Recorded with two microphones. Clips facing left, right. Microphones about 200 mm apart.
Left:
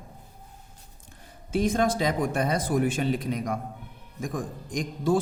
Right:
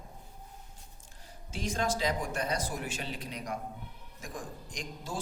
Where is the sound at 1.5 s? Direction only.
55° left (ahead or behind).